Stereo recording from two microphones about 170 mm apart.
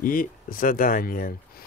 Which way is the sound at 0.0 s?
55° left (ahead or behind).